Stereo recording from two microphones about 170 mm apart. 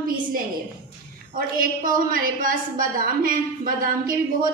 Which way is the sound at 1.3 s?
55° right (ahead or behind).